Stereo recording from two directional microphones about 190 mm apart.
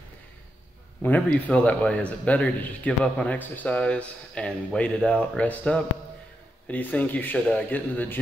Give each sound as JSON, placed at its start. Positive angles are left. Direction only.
{"t": 1.0, "sound": "a man's voice", "side_deg": 10}